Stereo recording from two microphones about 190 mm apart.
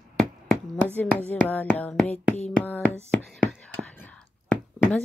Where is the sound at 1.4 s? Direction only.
10° left (ahead or behind).